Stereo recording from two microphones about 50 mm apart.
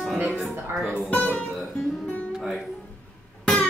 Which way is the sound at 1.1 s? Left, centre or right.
Left.